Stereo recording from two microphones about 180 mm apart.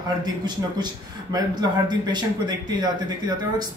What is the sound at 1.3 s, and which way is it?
Speech, 25° right (ahead or behind).